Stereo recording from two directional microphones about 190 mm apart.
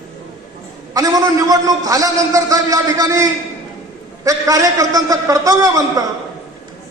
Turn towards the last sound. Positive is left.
turn(degrees=-20)  # may be behind; listen again after turning